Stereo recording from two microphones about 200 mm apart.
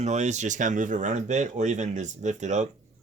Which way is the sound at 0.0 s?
35° right (ahead or behind).